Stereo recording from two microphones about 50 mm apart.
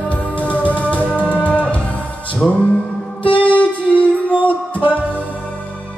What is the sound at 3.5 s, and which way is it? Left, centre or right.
Music, left.